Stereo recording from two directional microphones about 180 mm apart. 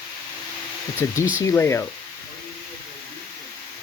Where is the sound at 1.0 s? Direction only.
15° left (ahead or behind).